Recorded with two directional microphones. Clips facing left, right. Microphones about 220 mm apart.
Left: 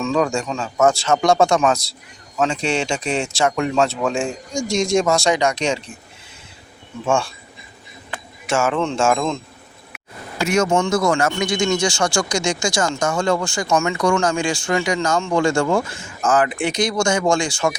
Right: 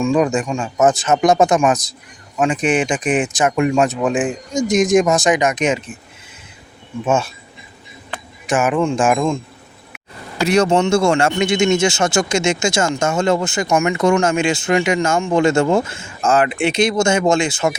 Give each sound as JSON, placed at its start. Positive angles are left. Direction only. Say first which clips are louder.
{"t": 0.0, "sound": "speech", "louder": "right 4 dB", "side_deg": -15}
{"t": 7.0, "sound": "speech", "louder": "right 2 dB", "side_deg": -20}
{"t": 8.4, "sound": "speech", "louder": "right 3 dB", "side_deg": -15}
{"t": 10.4, "sound": "speech", "louder": "right 3 dB", "side_deg": -35}